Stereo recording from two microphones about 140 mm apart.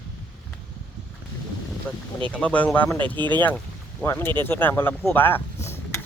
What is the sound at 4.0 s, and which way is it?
Speech, 15° left (ahead or behind).